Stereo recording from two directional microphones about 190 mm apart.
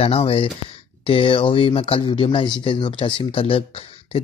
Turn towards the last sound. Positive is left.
turn(degrees=30)  # may be behind; listen again after turning